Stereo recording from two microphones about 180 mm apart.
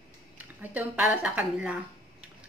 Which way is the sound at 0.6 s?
10° right (ahead or behind).